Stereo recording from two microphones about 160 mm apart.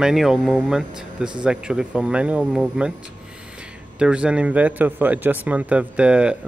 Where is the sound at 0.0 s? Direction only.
Centre (ahead or behind).